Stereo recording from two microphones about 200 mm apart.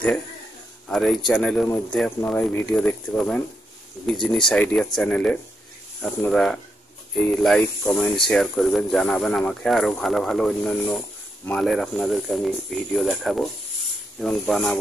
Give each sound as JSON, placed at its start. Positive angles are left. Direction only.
{"t": 0.8, "sound": "speech", "side_deg": 0}